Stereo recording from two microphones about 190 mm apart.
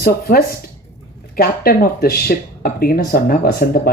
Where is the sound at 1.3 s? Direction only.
50° left (ahead or behind).